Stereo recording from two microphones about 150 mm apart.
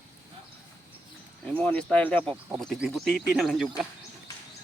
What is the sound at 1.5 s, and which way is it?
Speech, 10° left (ahead or behind).